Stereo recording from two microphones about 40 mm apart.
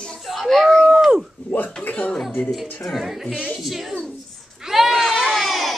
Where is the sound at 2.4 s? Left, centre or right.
Left.